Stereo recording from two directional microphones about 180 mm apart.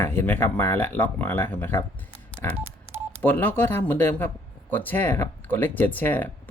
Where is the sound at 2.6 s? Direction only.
15° right (ahead or behind).